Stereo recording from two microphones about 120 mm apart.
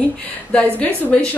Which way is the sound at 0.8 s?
15° left (ahead or behind).